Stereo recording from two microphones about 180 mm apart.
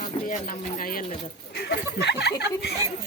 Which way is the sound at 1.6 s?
70° left (ahead or behind).